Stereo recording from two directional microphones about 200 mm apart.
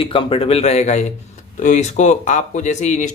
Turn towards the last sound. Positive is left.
turn(degrees=35)  # may be behind; listen again after turning